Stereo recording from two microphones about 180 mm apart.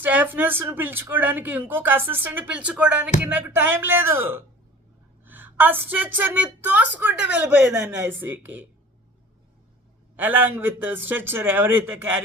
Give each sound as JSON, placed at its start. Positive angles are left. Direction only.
{"t": 0.0, "sound": "speech", "side_deg": -10}
{"t": 5.2, "sound": "a sound", "side_deg": -10}
{"t": 6.1, "sound": "speech", "side_deg": -10}
{"t": 10.2, "sound": "speech", "side_deg": -10}